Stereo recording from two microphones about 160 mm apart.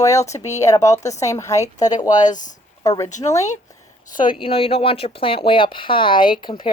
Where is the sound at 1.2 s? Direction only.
20° left (ahead or behind).